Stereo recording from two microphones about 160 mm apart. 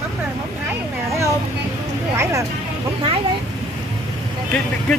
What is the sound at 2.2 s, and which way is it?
Speech, 20° right (ahead or behind).